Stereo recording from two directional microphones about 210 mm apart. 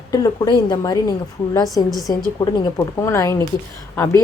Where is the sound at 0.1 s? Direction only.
20° left (ahead or behind).